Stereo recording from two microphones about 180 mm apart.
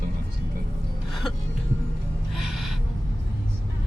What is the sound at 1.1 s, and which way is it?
Speech, centre (ahead or behind).